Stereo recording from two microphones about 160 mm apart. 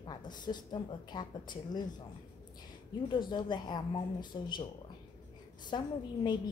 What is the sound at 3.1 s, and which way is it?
Speech, 30° left (ahead or behind).